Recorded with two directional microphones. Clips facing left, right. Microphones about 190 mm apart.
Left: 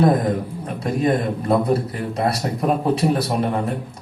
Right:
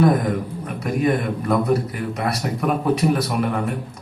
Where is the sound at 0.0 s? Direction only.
30° left (ahead or behind).